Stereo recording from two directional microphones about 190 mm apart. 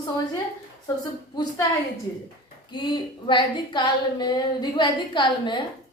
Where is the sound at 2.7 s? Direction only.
25° left (ahead or behind).